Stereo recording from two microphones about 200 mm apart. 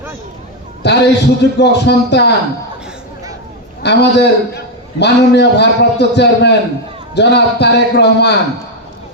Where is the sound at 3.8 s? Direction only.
55° left (ahead or behind).